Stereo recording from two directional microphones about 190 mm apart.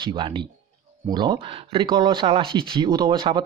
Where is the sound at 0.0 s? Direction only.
25° right (ahead or behind).